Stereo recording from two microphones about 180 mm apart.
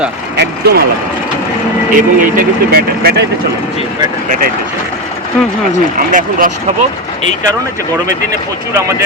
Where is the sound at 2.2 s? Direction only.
50° right (ahead or behind).